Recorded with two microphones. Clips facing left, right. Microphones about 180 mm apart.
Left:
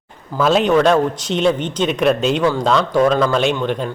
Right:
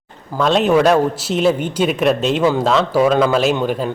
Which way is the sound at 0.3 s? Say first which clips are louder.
Even; 5° left (ahead or behind).